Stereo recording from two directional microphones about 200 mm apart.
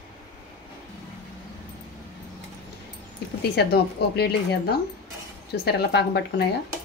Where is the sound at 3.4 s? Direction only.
55° left (ahead or behind).